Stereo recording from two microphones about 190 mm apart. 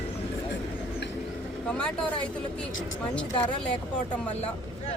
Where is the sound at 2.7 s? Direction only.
90° left.